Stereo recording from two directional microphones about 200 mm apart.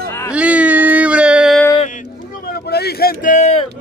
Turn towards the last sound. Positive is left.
turn(degrees=35)  # may be behind; listen again after turning